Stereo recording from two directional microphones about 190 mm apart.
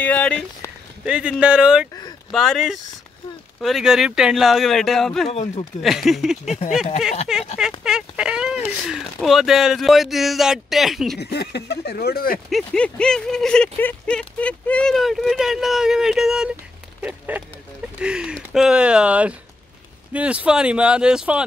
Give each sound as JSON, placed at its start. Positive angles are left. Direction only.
{"t": 0.0, "sound": "speech", "side_deg": 5}
{"t": 1.0, "sound": "speech", "side_deg": -5}
{"t": 5.3, "sound": "speech", "side_deg": 35}
{"t": 5.8, "sound": "speech", "side_deg": 0}
{"t": 11.1, "sound": "speech", "side_deg": 60}
{"t": 12.4, "sound": "speech", "side_deg": 5}
{"t": 18.0, "sound": "speech", "side_deg": -5}